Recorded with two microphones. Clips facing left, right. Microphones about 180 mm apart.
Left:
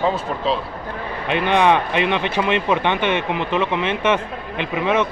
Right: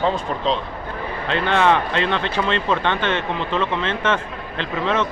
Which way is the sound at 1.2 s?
15° left (ahead or behind).